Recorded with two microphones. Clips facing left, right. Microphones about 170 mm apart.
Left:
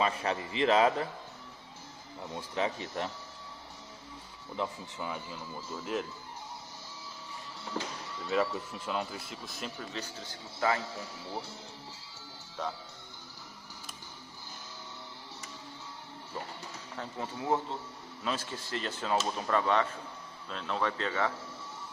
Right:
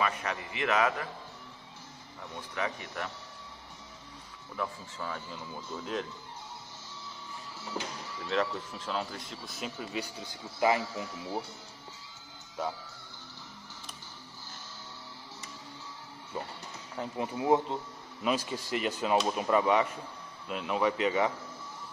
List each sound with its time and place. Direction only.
0.0 s a man's voice: 30° left (ahead or behind)
2.3 s a man's voice: 25° left (ahead or behind)
4.6 s speech: 15° left (ahead or behind)
8.2 s speech: centre (ahead or behind); by 10.8 s 15° right (ahead or behind)
12.6 s speech: 10° right (ahead or behind)
16.9 s speech: 15° right (ahead or behind)